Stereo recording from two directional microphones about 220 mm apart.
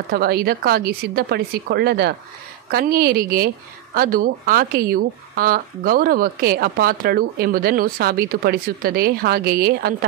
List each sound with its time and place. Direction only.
0.1 s speech: 45° right (ahead or behind)